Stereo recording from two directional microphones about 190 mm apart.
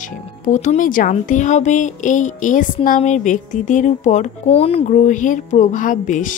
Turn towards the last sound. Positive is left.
turn(degrees=45)  # may be behind; listen again after turning